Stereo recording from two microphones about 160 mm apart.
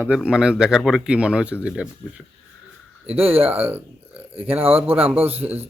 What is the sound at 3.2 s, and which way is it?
Speech, 35° right (ahead or behind).